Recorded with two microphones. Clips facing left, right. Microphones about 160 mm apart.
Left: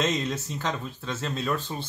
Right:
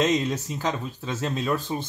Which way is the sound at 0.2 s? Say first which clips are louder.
Right 3 dB; 10° right (ahead or behind).